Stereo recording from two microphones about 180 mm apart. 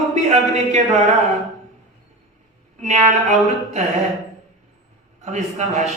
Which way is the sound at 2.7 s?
40° right (ahead or behind).